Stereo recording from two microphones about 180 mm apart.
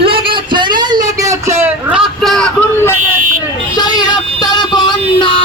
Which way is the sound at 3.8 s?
20° left (ahead or behind).